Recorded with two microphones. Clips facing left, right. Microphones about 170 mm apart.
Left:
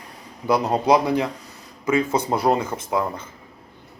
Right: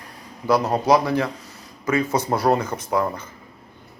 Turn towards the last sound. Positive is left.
turn(degrees=20)  # may be behind; listen again after turning